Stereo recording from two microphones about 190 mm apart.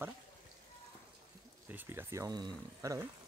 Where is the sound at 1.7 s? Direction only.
10° right (ahead or behind).